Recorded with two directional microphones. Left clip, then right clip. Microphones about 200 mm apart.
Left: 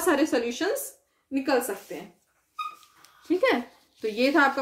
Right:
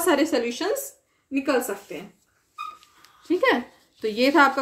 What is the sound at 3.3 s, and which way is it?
Speech, 20° right (ahead or behind).